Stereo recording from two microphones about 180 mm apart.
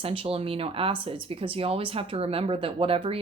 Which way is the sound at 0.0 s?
30° right (ahead or behind).